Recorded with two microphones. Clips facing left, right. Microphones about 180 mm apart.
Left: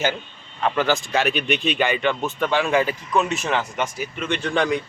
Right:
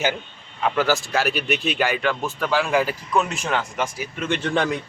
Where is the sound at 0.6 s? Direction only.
5° right (ahead or behind).